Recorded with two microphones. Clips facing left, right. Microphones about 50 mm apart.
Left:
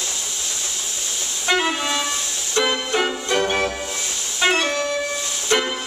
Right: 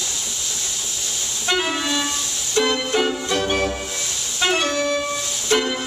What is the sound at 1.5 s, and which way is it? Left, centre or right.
Music, centre.